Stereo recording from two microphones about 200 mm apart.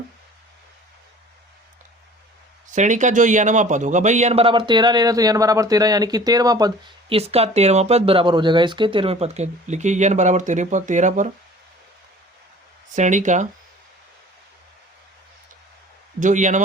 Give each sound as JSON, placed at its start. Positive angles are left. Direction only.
{"t": 2.7, "sound": "a man's voice", "side_deg": -40}
{"t": 13.0, "sound": "a man's voice", "side_deg": -40}
{"t": 16.2, "sound": "a man's voice", "side_deg": -40}